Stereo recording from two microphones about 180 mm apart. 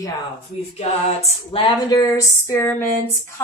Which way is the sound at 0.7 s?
35° left (ahead or behind).